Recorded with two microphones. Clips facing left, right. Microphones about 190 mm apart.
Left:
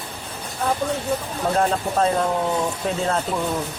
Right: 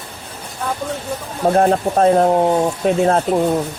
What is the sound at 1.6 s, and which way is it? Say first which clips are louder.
Speech: right 6 dB; 50° right (ahead or behind).